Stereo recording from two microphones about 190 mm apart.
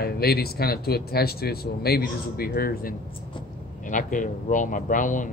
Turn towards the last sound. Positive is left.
turn(degrees=45)  # may be behind; listen again after turning